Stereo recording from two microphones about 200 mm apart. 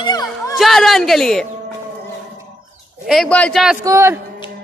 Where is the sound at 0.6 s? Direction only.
Centre (ahead or behind).